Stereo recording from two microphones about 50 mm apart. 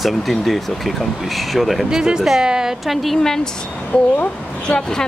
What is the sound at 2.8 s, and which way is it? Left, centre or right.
Speech, centre.